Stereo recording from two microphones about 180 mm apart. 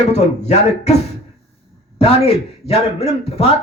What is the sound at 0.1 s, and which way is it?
Speech, 40° left (ahead or behind).